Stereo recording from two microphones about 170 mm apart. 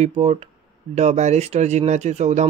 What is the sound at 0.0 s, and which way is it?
Speech, 40° right (ahead or behind).